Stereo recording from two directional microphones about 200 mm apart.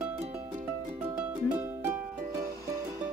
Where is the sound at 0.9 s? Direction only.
10° right (ahead or behind).